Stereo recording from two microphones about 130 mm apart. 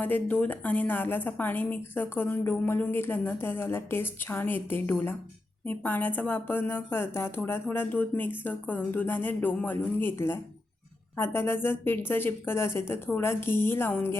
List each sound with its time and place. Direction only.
0.0 s a woman's voice: 15° left (ahead or behind)